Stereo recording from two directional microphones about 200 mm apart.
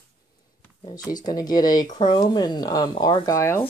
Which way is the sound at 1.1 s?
20° left (ahead or behind).